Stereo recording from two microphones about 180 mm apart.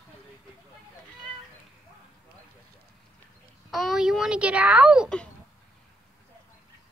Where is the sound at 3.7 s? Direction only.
Centre (ahead or behind).